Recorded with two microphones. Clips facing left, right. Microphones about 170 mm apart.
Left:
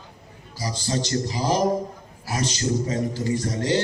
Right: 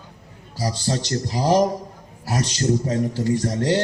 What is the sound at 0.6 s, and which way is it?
A man's voice, 65° right (ahead or behind).